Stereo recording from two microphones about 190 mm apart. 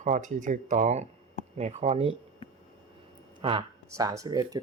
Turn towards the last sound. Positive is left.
turn(degrees=-20)  # may be behind; listen again after turning